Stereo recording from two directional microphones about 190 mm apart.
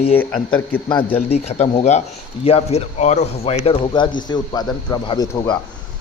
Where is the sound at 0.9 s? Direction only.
25° left (ahead or behind).